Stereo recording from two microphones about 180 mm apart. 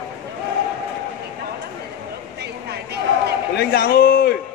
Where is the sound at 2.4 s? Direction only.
65° right (ahead or behind).